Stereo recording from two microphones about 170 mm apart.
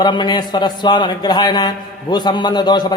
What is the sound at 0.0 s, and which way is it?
A man's voice, 25° left (ahead or behind).